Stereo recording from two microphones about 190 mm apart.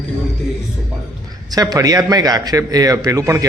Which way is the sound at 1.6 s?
20° right (ahead or behind).